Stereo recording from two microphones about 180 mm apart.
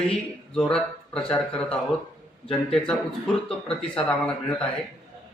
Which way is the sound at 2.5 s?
Centre (ahead or behind).